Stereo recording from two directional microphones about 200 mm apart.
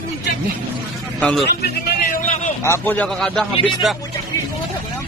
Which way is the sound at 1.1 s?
5° left (ahead or behind).